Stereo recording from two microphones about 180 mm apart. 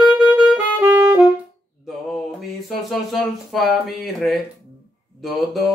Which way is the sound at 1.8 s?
Centre (ahead or behind).